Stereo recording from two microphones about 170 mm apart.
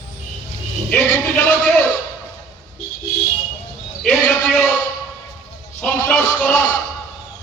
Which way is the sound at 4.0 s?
5° left (ahead or behind).